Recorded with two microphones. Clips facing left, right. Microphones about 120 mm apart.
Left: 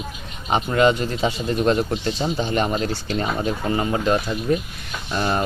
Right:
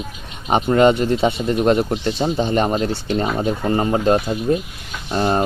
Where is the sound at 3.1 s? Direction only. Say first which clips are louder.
Right 4 dB; 30° right (ahead or behind).